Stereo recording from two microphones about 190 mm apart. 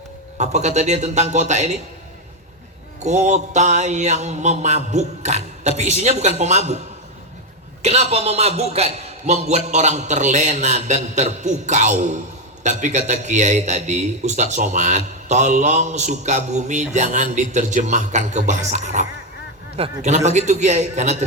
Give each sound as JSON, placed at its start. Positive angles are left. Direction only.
{"t": 0.3, "sound": "a man's voice", "side_deg": -35}
{"t": 3.0, "sound": "a man's voice", "side_deg": -40}